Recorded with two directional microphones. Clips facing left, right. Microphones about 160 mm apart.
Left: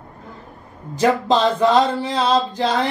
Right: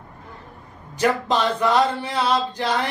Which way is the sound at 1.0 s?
25° left (ahead or behind).